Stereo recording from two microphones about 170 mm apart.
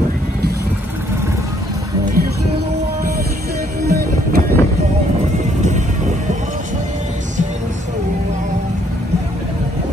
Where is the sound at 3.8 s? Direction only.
65° right (ahead or behind).